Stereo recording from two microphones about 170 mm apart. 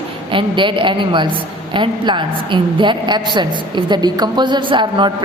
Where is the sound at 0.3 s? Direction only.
30° right (ahead or behind).